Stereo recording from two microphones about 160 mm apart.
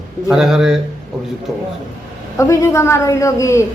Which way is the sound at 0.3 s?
5° right (ahead or behind).